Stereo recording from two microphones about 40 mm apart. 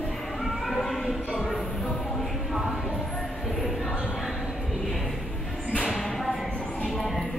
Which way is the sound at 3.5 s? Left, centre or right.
Centre.